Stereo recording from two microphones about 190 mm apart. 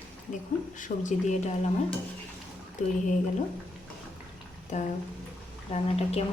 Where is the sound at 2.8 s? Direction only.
40° left (ahead or behind).